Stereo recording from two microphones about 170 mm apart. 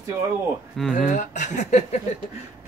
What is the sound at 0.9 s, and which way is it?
Speech, 45° left (ahead or behind).